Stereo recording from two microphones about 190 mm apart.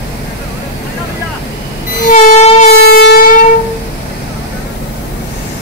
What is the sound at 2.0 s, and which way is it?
Music, 40° left (ahead or behind).